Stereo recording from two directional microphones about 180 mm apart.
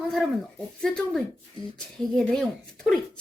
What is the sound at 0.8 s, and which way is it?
A woman's voice, 5° left (ahead or behind).